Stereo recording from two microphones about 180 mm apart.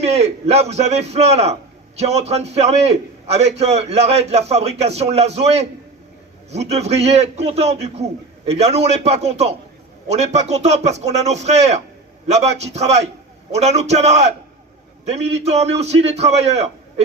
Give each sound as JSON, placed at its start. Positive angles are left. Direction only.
{"t": 0.0, "sound": "speech", "side_deg": -35}